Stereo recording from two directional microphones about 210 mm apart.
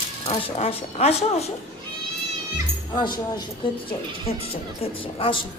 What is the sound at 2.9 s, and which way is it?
Speech, 20° left (ahead or behind).